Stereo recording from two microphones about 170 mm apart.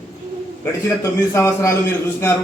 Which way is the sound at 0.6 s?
15° left (ahead or behind).